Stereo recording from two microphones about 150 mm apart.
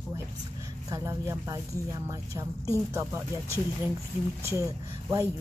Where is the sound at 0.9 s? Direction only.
20° right (ahead or behind).